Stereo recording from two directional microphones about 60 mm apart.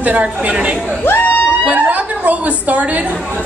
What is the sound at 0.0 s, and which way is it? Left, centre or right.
Speech, right.